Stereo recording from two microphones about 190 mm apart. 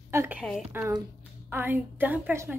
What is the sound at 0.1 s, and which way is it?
A woman's voice, 10° right (ahead or behind).